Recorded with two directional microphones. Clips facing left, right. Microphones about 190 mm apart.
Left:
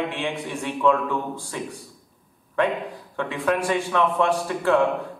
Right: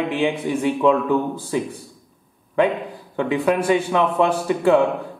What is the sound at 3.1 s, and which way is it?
Speech, 20° right (ahead or behind).